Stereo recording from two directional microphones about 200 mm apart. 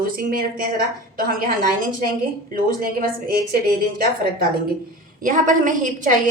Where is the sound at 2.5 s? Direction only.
45° right (ahead or behind).